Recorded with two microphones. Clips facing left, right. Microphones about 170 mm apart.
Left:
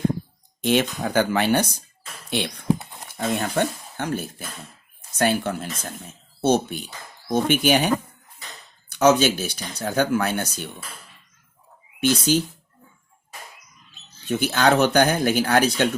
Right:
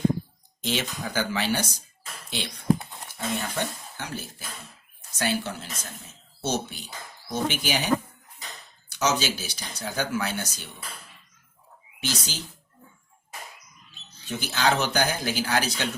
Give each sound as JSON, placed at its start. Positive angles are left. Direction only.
{"t": 0.6, "sound": "speech", "side_deg": 55}
{"t": 11.9, "sound": "speech", "side_deg": 55}
{"t": 14.3, "sound": "speech", "side_deg": 55}